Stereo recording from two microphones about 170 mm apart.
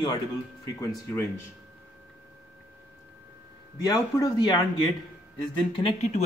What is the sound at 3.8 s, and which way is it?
Speech, 20° left (ahead or behind).